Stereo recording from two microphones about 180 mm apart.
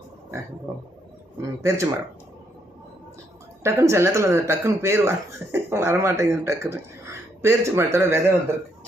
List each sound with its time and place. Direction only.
1.4 s speech: 15° right (ahead or behind)
3.6 s speech: 15° right (ahead or behind)